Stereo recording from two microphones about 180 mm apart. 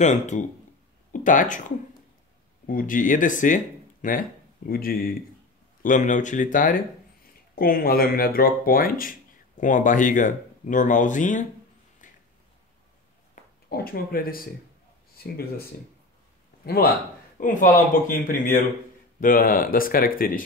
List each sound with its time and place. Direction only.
0.0 s speech: 40° left (ahead or behind)
2.6 s speech: 50° left (ahead or behind)
12.0 s a sound: 45° left (ahead or behind)
13.3 s a sound: 55° left (ahead or behind)
15.1 s speech: 55° left (ahead or behind)
17.4 s speech: 50° left (ahead or behind)